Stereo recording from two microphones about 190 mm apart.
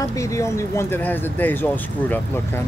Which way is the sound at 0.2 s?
15° left (ahead or behind).